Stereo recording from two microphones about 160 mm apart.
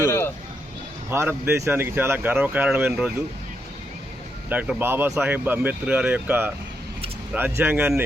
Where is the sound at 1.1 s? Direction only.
15° right (ahead or behind).